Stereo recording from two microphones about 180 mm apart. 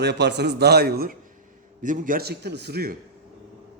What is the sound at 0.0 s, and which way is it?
A man's voice, 70° right (ahead or behind).